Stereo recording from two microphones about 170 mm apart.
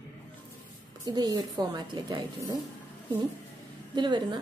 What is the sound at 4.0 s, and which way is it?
Speech, 25° right (ahead or behind).